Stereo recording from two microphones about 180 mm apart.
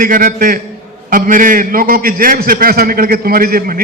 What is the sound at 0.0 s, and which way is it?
A man's voice, 50° right (ahead or behind).